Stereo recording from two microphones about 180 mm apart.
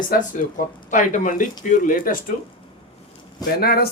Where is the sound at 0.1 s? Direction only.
45° left (ahead or behind).